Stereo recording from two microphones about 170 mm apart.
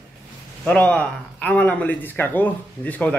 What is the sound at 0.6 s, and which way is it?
Speech, 10° left (ahead or behind).